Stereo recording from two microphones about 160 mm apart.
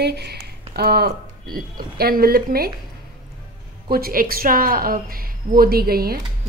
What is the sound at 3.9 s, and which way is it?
A woman's voice, 65° right (ahead or behind).